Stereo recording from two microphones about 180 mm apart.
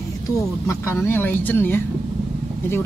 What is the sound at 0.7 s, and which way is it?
Speech, 15° left (ahead or behind).